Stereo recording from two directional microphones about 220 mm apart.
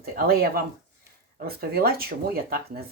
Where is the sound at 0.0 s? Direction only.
40° right (ahead or behind).